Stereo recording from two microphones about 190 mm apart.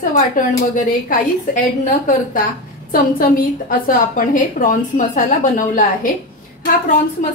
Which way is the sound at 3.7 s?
45° left (ahead or behind).